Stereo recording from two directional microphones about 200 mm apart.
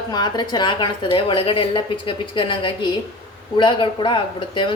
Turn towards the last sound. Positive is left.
turn(degrees=25)  # may be behind; listen again after turning